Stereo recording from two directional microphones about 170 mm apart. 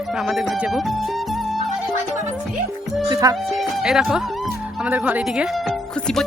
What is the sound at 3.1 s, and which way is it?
Speech, 20° right (ahead or behind).